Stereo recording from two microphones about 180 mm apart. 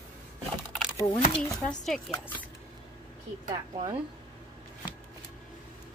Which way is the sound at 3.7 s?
35° right (ahead or behind).